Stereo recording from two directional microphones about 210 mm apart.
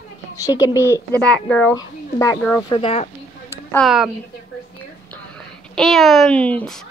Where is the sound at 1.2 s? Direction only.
5° left (ahead or behind).